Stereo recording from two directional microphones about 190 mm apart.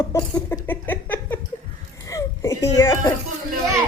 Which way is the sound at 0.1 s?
15° left (ahead or behind).